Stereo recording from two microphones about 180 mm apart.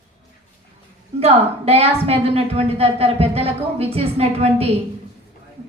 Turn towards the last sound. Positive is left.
turn(degrees=-35)  # may be behind; listen again after turning